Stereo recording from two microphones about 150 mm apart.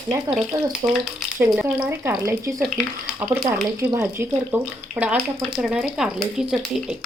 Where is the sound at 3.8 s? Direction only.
15° right (ahead or behind).